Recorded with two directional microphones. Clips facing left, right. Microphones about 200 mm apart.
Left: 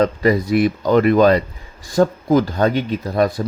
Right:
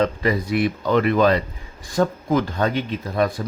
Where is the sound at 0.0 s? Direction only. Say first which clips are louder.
Left 5 dB; 40° left (ahead or behind).